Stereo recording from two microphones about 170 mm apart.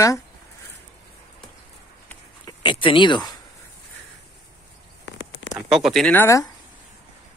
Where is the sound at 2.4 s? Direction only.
25° left (ahead or behind).